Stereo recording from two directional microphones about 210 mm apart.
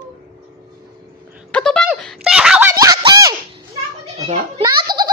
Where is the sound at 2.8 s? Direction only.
20° right (ahead or behind).